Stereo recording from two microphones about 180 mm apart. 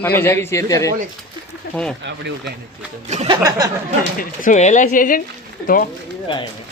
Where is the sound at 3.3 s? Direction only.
20° right (ahead or behind).